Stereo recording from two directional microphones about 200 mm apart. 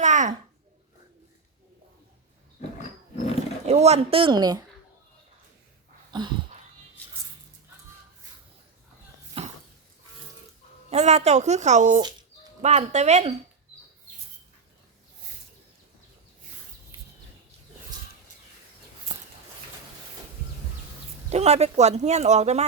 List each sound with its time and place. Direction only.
0.0 s babbling: 35° right (ahead or behind)
3.7 s speech: 35° right (ahead or behind)
6.1 s dog: 20° right (ahead or behind)
9.4 s a sound: 30° right (ahead or behind)
10.8 s speech: 35° right (ahead or behind)
21.2 s speech: 35° right (ahead or behind)